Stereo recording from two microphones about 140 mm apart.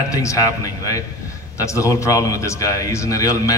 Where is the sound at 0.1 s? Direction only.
25° left (ahead or behind).